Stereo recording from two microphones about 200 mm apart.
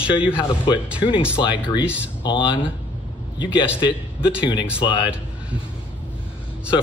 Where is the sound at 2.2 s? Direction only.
25° left (ahead or behind).